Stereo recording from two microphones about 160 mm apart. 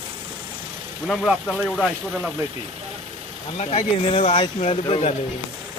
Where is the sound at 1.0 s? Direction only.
5° left (ahead or behind).